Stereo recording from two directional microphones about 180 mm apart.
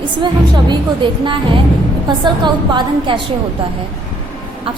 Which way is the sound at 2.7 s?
25° right (ahead or behind).